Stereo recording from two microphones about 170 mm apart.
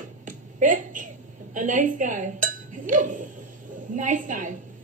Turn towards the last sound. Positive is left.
turn(degrees=-50)  # may be behind; listen again after turning